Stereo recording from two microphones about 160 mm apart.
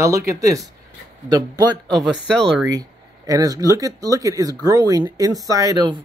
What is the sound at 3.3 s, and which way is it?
Speech, 20° right (ahead or behind).